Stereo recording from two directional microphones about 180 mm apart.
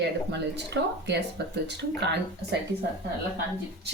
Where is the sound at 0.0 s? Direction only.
70° right (ahead or behind).